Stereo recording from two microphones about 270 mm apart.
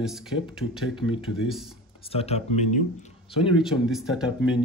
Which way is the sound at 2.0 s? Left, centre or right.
Left.